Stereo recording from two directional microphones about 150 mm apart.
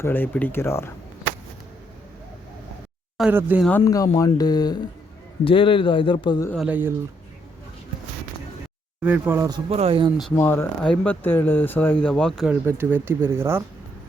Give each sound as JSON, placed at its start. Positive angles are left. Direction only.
{"t": 0.0, "sound": "speech", "side_deg": 15}
{"t": 3.2, "sound": "speech", "side_deg": -10}
{"t": 3.7, "sound": "a man's voice", "side_deg": 20}
{"t": 6.7, "sound": "speech", "side_deg": -10}
{"t": 9.0, "sound": "speech", "side_deg": -10}
{"t": 9.6, "sound": "speech", "side_deg": -40}
{"t": 10.3, "sound": "speech", "side_deg": 15}
{"t": 12.5, "sound": "speech", "side_deg": -15}